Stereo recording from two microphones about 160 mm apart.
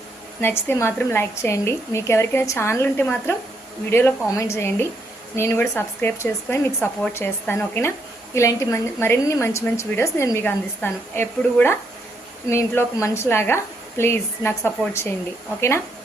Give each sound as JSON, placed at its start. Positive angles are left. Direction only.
{"t": 0.4, "sound": "a woman's voice", "side_deg": 15}